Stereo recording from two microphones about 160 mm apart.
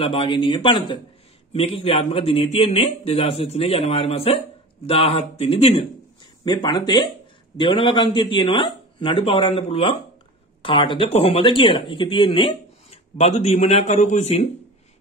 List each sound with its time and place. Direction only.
0.0 s speech: 35° left (ahead or behind)